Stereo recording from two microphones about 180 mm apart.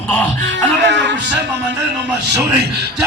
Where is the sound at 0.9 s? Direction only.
80° right.